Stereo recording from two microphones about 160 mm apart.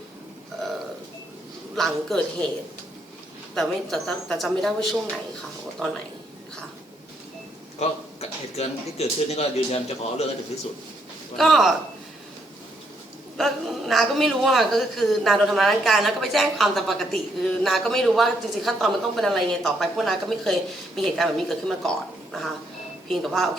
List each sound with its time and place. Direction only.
1.7 s a woman's voice: centre (ahead or behind)
3.5 s a woman's voice: centre (ahead or behind)
7.8 s a man's voice: 40° left (ahead or behind)
11.3 s a woman's voice: centre (ahead or behind)
13.3 s a woman's voice: centre (ahead or behind)